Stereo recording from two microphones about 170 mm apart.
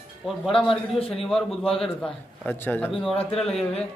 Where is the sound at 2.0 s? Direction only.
10° left (ahead or behind).